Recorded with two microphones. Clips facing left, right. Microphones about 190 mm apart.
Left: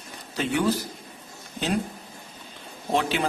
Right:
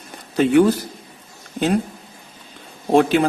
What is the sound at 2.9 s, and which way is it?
Speech, 50° right (ahead or behind).